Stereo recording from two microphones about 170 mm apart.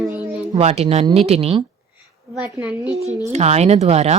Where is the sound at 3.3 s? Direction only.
40° right (ahead or behind).